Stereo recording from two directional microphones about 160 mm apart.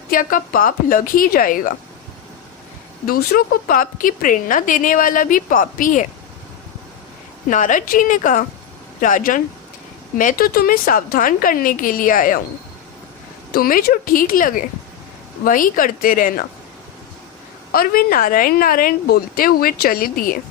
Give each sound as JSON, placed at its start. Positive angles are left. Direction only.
{"t": 0.1, "sound": "a woman's voice", "side_deg": 60}
{"t": 3.1, "sound": "a woman's voice", "side_deg": 65}
{"t": 7.4, "sound": "a woman's voice", "side_deg": 55}
{"t": 13.5, "sound": "a woman's voice", "side_deg": 65}
{"t": 17.7, "sound": "a woman's voice", "side_deg": 65}